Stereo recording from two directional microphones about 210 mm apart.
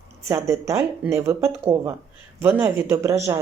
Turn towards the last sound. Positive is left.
turn(degrees=-15)  # may be behind; listen again after turning